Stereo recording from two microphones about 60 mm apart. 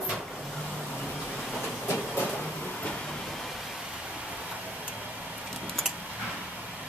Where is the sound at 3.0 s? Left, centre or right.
Centre.